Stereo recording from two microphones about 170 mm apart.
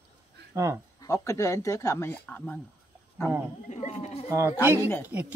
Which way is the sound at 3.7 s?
40° left (ahead or behind).